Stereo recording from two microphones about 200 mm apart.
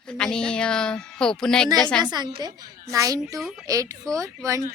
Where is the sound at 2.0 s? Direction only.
20° right (ahead or behind).